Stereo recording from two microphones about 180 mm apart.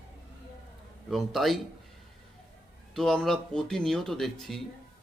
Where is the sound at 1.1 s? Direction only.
Centre (ahead or behind).